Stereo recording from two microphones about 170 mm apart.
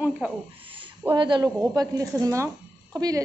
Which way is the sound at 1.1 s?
25° right (ahead or behind).